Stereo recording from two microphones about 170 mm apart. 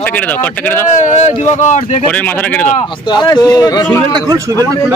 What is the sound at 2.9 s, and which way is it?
Speech, 25° left (ahead or behind).